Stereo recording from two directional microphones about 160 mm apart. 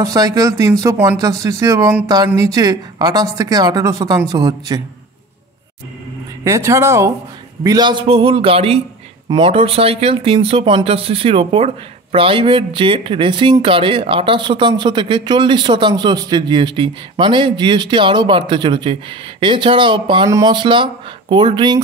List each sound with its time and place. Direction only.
0.0 s speech: 20° right (ahead or behind)
6.4 s speech: 20° right (ahead or behind)